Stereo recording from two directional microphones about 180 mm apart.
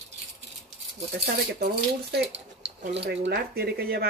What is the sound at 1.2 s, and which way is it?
Speech, 60° right (ahead or behind).